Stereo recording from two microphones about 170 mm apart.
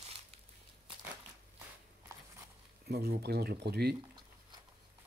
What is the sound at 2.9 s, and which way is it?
Speech, 65° right (ahead or behind).